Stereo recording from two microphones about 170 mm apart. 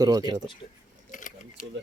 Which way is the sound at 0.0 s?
20° right (ahead or behind).